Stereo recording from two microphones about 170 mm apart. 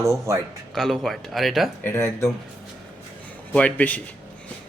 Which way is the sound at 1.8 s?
15° left (ahead or behind).